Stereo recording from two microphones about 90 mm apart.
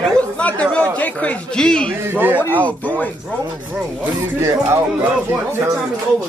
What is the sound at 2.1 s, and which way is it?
Speech, 20° right (ahead or behind).